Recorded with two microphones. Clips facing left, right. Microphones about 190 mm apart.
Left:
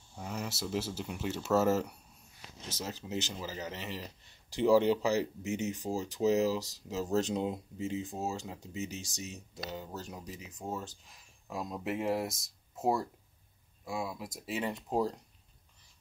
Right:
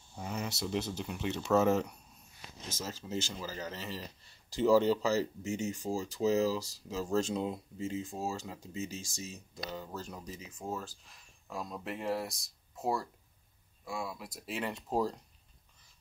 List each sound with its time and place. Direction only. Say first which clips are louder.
0.1 s speech: right 1 dB; centre (ahead or behind)
2.7 s speech: even; 15° left (ahead or behind)
11.8 s speech: left 8 dB; 5° left (ahead or behind)
12.1 s speech: left 2 dB; 20° left (ahead or behind)
14.4 s speech: left 2 dB; 5° left (ahead or behind)
14.7 s speech: even; 15° left (ahead or behind)